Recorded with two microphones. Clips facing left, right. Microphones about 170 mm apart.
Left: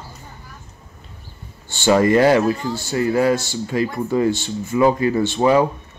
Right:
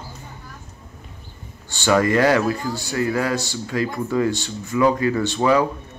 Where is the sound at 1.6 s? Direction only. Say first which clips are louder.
Left 3 dB; 25° left (ahead or behind).